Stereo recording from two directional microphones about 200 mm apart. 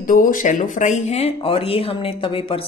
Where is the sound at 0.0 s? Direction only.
45° left (ahead or behind).